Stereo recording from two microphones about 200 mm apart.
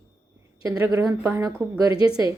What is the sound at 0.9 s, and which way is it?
Speech, 15° right (ahead or behind).